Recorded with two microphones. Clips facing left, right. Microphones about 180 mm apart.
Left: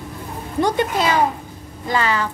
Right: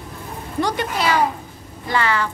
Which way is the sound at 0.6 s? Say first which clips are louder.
Left 3 dB; 20° left (ahead or behind).